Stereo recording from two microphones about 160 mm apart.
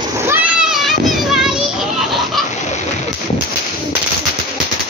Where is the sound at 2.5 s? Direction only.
45° left (ahead or behind).